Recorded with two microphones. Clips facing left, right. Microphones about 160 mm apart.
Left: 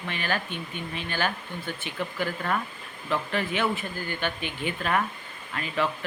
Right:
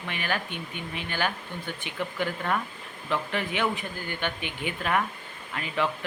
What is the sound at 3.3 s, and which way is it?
Speech, 15° right (ahead or behind).